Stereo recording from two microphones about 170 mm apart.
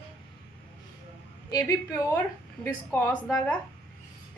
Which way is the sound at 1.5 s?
20° left (ahead or behind).